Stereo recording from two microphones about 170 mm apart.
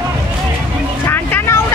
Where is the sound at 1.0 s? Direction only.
15° left (ahead or behind).